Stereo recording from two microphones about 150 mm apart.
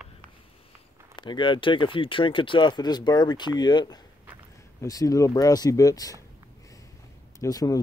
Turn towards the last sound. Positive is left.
turn(degrees=25)  # may be behind; listen again after turning